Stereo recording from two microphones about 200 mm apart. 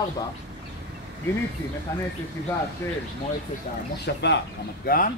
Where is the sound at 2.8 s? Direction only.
15° left (ahead or behind).